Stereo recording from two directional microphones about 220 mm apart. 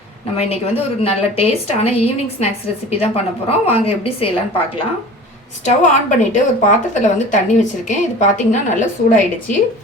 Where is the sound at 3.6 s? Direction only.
25° left (ahead or behind).